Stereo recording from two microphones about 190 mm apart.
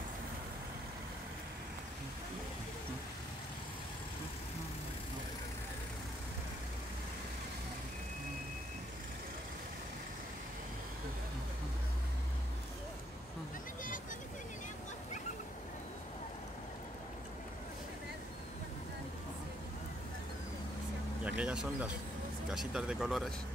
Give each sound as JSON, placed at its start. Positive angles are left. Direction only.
{"t": 21.2, "sound": "speech", "side_deg": -5}